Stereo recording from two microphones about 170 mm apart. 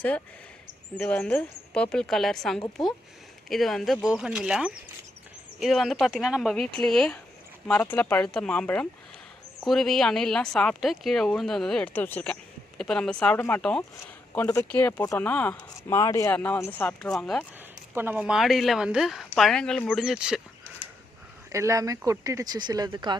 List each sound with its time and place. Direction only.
0.9 s speech: 5° left (ahead or behind)
13.9 s speech: 20° left (ahead or behind); by 17.4 s centre (ahead or behind)
17.9 s speech: 10° right (ahead or behind)
21.5 s speech: 20° right (ahead or behind)